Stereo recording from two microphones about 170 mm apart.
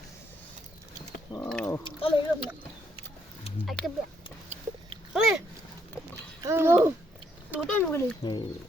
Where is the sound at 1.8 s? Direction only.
30° left (ahead or behind).